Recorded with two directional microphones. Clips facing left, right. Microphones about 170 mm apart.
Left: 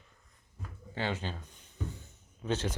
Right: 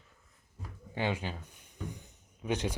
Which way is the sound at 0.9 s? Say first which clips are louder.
Right 1 dB; 15° right (ahead or behind).